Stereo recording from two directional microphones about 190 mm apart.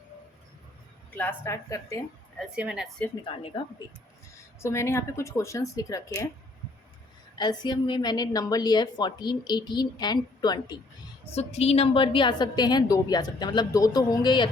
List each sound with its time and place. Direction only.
1.1 s a woman's voice: 10° left (ahead or behind)
2.4 s a woman's voice: 5° right (ahead or behind)
3.2 s a woman's voice: 30° left (ahead or behind)
4.6 s a woman's voice: 15° left (ahead or behind)
7.3 s a woman's voice: 25° left (ahead or behind)
11.3 s a woman's voice: 35° left (ahead or behind)